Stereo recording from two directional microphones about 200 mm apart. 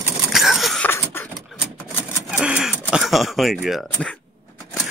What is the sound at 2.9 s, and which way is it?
Speech, centre (ahead or behind).